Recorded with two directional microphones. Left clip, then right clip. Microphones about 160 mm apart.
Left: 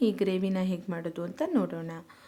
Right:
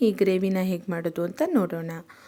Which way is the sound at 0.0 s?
25° right (ahead or behind).